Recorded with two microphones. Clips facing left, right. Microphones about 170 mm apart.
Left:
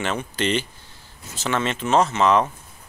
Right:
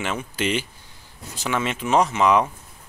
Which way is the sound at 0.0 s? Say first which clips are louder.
Left 1 dB; 5° right (ahead or behind).